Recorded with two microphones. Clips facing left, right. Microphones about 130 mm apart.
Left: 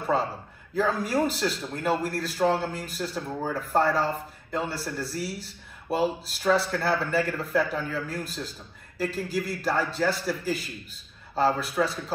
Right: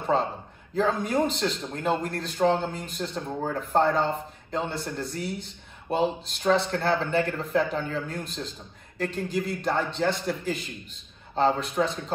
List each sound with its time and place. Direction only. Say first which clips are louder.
0.1 s a man's voice: right 1 dB; 5° left (ahead or behind)
3.2 s speech: right 1 dB; 20° right (ahead or behind)
3.5 s a man's voice: right 1 dB; 5° left (ahead or behind)